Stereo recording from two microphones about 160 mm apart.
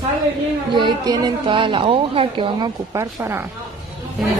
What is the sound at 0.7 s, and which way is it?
A woman's voice, 25° right (ahead or behind).